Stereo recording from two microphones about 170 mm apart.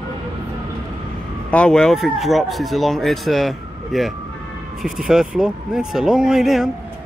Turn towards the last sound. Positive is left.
turn(degrees=0)  # may be behind; listen again after turning